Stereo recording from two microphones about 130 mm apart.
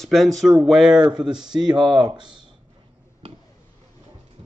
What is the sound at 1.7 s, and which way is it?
Speech, 35° right (ahead or behind).